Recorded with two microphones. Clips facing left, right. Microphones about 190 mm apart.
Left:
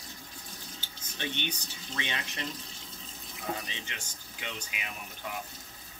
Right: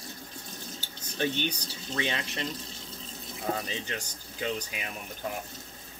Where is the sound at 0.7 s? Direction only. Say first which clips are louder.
Right 10 dB; 40° right (ahead or behind).